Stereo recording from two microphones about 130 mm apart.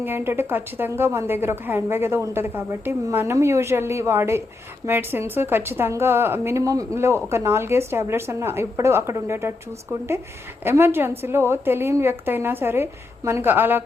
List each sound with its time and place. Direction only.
0.0 s a woman's voice: 15° right (ahead or behind)
10.6 s a woman's voice: 20° right (ahead or behind)